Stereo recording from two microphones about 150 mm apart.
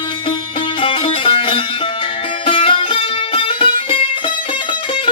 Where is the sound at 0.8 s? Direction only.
35° left (ahead or behind).